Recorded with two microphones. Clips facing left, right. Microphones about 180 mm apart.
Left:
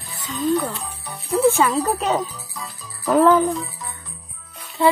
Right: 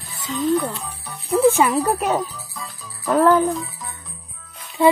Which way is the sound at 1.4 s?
15° right (ahead or behind).